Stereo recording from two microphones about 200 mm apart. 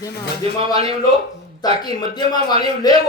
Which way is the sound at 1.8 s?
20° left (ahead or behind).